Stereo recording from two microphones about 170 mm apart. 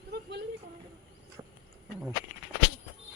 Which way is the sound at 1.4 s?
20° right (ahead or behind).